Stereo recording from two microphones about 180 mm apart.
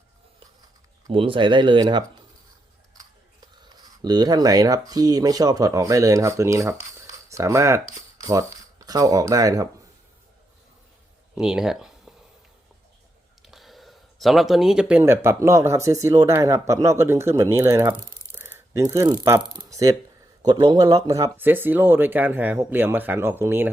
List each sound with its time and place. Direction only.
1.0 s speech: 30° right (ahead or behind)
3.8 s speech: 20° right (ahead or behind)
11.3 s speech: 5° right (ahead or behind)
13.4 s speech: centre (ahead or behind)
18.1 s a sound: 15° right (ahead or behind)
20.4 s speech: 25° right (ahead or behind)